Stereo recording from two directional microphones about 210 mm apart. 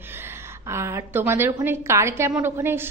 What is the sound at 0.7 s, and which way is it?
A woman's voice, 15° right (ahead or behind).